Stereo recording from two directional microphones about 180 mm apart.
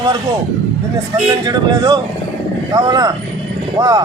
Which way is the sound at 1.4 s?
20° right (ahead or behind).